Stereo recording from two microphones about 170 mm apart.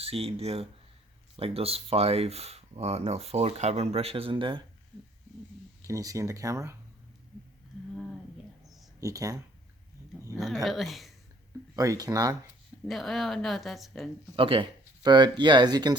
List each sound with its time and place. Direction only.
0.0 s speech: 35° right (ahead or behind)
5.8 s speech: 20° right (ahead or behind)
9.0 s speech: 20° right (ahead or behind)
10.4 s a woman's voice: centre (ahead or behind)
11.8 s speech: 20° right (ahead or behind)
12.9 s a woman's voice: centre (ahead or behind)
14.3 s speech: 30° right (ahead or behind)